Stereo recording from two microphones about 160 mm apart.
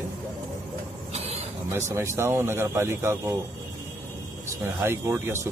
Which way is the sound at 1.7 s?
15° right (ahead or behind).